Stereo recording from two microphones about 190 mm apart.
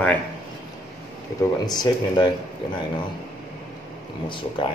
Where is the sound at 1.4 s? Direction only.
20° left (ahead or behind).